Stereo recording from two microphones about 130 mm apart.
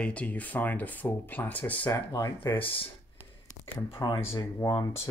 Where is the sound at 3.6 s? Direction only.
30° left (ahead or behind).